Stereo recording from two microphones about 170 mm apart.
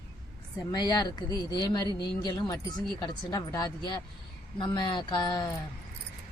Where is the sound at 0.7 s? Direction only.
25° left (ahead or behind).